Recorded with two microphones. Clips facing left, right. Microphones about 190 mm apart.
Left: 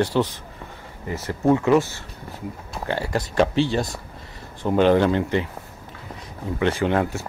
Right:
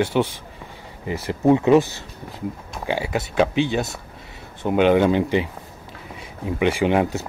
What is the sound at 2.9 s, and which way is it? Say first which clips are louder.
Speech: right 1 dB; 5° right (ahead or behind).